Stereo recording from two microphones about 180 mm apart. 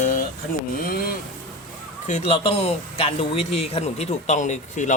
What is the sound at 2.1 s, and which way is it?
Speech, 35° left (ahead or behind).